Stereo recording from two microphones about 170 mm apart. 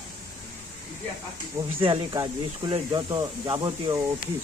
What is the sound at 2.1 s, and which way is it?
Speech, 30° right (ahead or behind).